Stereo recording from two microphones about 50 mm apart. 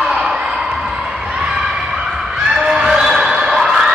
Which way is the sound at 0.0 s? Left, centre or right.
Centre.